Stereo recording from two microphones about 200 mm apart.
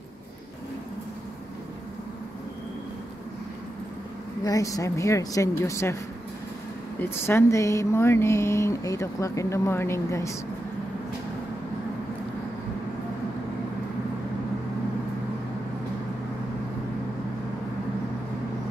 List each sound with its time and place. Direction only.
4.5 s speech: 15° left (ahead or behind)
7.0 s speech: 10° left (ahead or behind)